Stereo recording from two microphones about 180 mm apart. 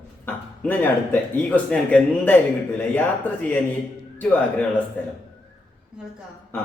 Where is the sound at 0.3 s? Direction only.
10° left (ahead or behind).